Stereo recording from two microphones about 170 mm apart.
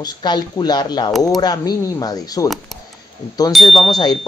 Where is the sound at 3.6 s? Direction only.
30° left (ahead or behind).